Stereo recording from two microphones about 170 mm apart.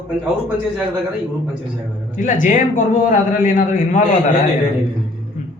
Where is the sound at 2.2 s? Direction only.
50° left (ahead or behind).